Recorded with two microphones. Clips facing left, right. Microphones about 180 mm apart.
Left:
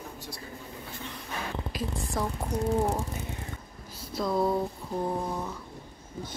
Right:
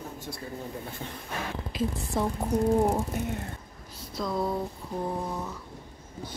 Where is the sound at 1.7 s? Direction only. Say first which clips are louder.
Right 6 dB; 25° right (ahead or behind).